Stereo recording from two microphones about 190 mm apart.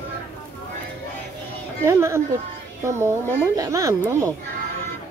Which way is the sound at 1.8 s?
15° right (ahead or behind).